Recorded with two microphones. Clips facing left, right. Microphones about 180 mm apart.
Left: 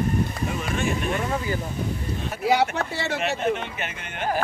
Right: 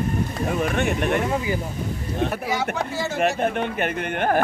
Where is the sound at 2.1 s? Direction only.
60° right (ahead or behind).